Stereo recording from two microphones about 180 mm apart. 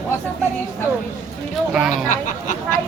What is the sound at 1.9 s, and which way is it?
Speech, 45° left (ahead or behind).